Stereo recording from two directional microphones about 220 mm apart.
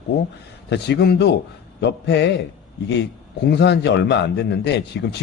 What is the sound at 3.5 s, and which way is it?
Speech, 50° left (ahead or behind).